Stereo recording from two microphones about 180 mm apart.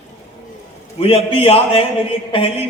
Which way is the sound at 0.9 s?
30° left (ahead or behind).